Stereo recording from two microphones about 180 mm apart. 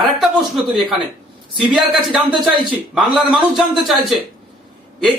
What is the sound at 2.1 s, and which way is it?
Speech, centre (ahead or behind).